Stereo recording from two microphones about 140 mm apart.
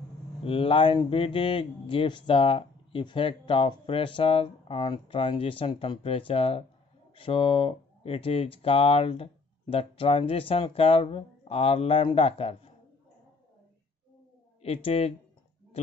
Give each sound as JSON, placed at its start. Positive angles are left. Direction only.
{"t": 0.4, "sound": "speech", "side_deg": 40}
{"t": 14.6, "sound": "speech", "side_deg": 45}